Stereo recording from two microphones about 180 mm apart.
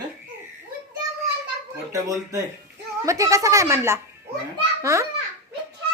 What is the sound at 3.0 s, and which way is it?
A woman's voice, 15° right (ahead or behind).